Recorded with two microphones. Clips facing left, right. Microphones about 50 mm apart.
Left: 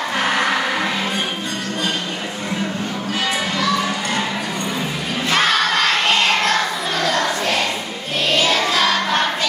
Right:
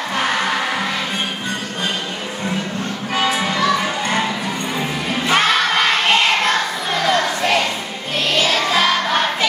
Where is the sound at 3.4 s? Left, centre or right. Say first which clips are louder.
Right 2 dB; centre.